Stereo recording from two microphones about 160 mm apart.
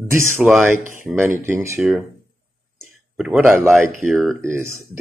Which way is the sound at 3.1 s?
Centre (ahead or behind).